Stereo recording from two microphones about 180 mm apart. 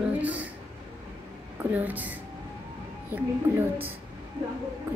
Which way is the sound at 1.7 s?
10° right (ahead or behind).